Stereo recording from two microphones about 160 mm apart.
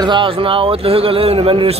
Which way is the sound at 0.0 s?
30° right (ahead or behind).